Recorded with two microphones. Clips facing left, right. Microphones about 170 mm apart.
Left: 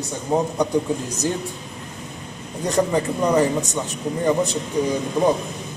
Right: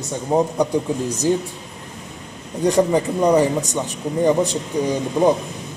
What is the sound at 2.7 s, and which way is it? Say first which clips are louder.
A man's voice: right 2 dB; 15° right (ahead or behind).